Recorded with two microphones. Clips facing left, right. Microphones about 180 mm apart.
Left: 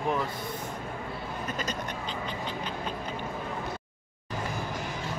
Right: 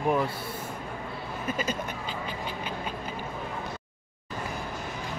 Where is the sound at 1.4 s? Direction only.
10° right (ahead or behind).